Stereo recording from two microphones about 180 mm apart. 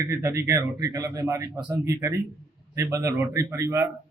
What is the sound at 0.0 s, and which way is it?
Speech, 15° right (ahead or behind).